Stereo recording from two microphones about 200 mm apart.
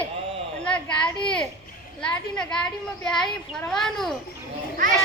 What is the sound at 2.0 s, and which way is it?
A child's voice, 5° left (ahead or behind).